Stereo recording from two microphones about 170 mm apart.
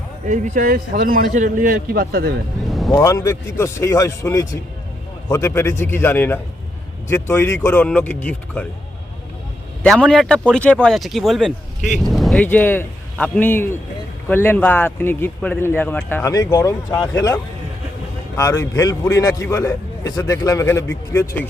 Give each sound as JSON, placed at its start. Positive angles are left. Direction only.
{"t": 0.3, "sound": "a man's voice", "side_deg": -50}
{"t": 2.6, "sound": "vehicle", "side_deg": 0}
{"t": 2.9, "sound": "a man's voice", "side_deg": 20}
{"t": 9.8, "sound": "a man's voice", "side_deg": 5}
{"t": 18.3, "sound": "a man's voice", "side_deg": 20}